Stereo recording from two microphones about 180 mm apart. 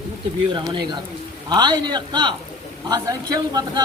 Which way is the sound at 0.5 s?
25° right (ahead or behind).